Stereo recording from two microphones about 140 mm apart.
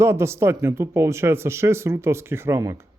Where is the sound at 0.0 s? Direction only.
20° right (ahead or behind).